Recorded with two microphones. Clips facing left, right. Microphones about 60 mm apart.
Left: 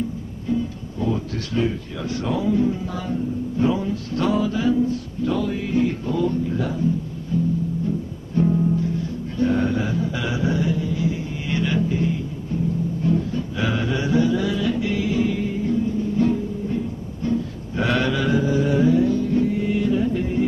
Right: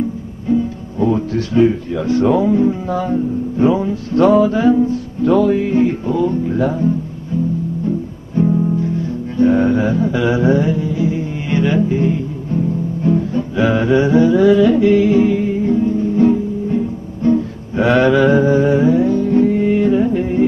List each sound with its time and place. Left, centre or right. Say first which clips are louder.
0.5 s speech: right 8 dB; right
4.4 s music: right 8 dB; right
6.0 s music: right 6 dB; right
6.5 s music: right 7 dB; right
8.4 s music: right 4 dB; centre
9.8 s music: right 9 dB; right
14.5 s music: right 12 dB; right
16.2 s music: right 8 dB; right
17.2 s music: right 9 dB; right
17.7 s music: right 9 dB; right
18.1 s a sound: right 9 dB; right
18.7 s music: right 5 dB; right